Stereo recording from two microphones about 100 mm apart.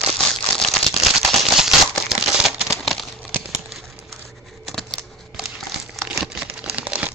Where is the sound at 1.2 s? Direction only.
Centre (ahead or behind).